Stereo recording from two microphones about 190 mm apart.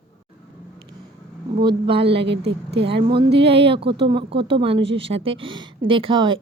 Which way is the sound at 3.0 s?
25° right (ahead or behind).